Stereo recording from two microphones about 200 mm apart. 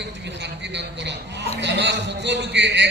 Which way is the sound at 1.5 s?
60° right (ahead or behind).